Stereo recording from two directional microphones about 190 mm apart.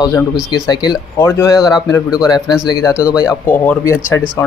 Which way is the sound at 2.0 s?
5° right (ahead or behind).